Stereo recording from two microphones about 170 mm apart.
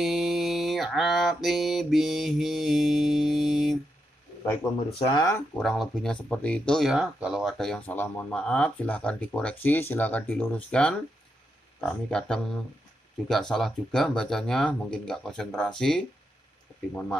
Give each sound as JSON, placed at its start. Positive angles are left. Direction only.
{"t": 0.0, "sound": "mantra", "side_deg": 0}
{"t": 4.9, "sound": "speech", "side_deg": 20}
{"t": 5.6, "sound": "speech", "side_deg": 0}